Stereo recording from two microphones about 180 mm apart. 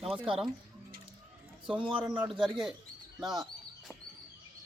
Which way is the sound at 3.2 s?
Centre (ahead or behind).